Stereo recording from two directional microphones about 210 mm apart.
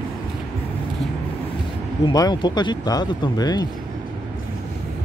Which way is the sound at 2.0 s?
20° left (ahead or behind).